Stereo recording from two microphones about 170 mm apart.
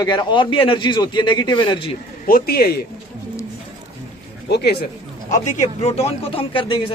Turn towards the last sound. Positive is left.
turn(degrees=30)  # may be behind; listen again after turning